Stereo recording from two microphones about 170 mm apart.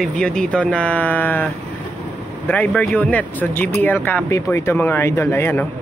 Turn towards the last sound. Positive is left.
turn(degrees=15)  # may be behind; listen again after turning